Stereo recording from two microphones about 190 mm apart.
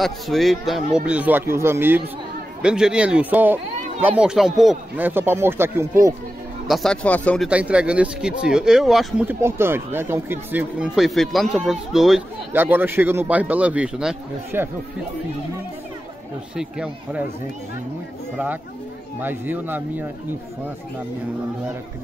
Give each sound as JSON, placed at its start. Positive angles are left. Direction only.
{"t": 0.0, "sound": "speech", "side_deg": 0}
{"t": 6.7, "sound": "speech", "side_deg": 5}
{"t": 7.4, "sound": "speech", "side_deg": -5}
{"t": 16.5, "sound": "speech", "side_deg": -5}
{"t": 19.2, "sound": "speech", "side_deg": -10}